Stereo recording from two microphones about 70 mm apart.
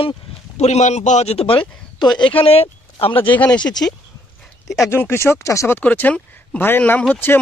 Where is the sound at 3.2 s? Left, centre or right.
Left.